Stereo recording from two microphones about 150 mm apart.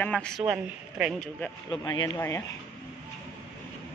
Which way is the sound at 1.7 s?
30° left (ahead or behind).